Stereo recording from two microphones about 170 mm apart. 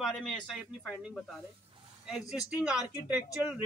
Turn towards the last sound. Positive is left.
turn(degrees=-10)  # may be behind; listen again after turning